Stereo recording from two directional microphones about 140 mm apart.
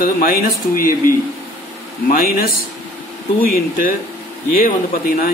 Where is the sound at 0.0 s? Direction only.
90° left.